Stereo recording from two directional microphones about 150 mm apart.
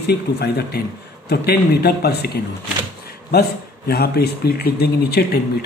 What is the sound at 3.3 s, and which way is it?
Speech, 90° left.